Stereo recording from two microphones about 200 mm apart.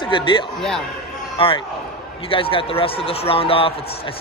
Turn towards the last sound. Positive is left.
turn(degrees=30)  # may be behind; listen again after turning